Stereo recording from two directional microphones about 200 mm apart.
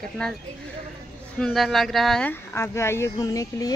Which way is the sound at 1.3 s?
Centre (ahead or behind).